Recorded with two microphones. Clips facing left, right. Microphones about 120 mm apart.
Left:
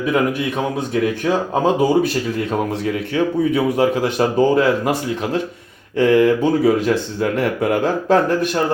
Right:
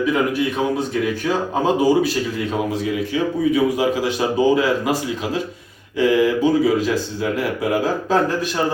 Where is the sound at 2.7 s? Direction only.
60° left (ahead or behind).